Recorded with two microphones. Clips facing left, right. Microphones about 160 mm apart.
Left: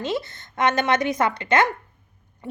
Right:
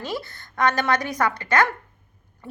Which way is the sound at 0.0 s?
20° left (ahead or behind).